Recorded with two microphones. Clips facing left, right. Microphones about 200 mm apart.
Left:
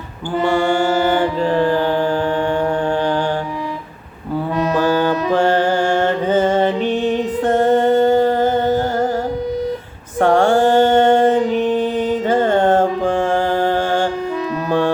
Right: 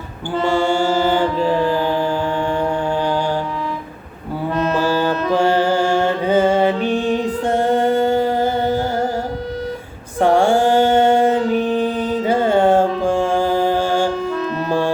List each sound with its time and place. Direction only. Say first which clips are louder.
1.4 s music: left 1 dB; 10° right (ahead or behind)
4.5 s music: even; 15° left (ahead or behind)
5.3 s music: even; 10° right (ahead or behind)
10.2 s mantra: left 1 dB; 10° right (ahead or behind)
11.3 s music: left 1 dB; 20° left (ahead or behind)
12.2 s music: right 1 dB; 10° right (ahead or behind)